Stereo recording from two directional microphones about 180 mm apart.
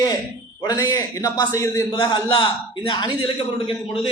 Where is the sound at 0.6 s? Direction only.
20° left (ahead or behind).